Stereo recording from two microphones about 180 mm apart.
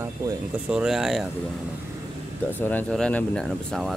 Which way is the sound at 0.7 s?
5° right (ahead or behind).